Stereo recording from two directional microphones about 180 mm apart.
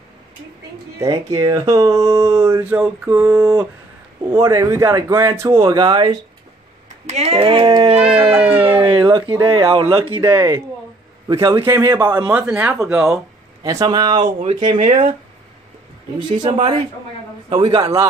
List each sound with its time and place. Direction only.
1.3 s speech: 20° right (ahead or behind)
7.1 s speech: 35° right (ahead or behind)
8.3 s speech: 10° right (ahead or behind)
8.7 s speech: 25° right (ahead or behind)
12.3 s speech: 10° right (ahead or behind)
13.6 s speech: 20° right (ahead or behind)
16.3 s speech: 35° right (ahead or behind)
17.5 s speech: 25° right (ahead or behind)